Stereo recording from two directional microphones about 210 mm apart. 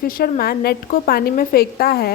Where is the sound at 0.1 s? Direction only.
45° left (ahead or behind).